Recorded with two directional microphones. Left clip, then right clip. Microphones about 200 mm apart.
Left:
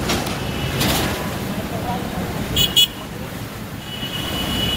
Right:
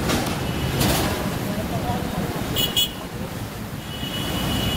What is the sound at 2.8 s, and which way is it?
Vehicle, 50° right (ahead or behind).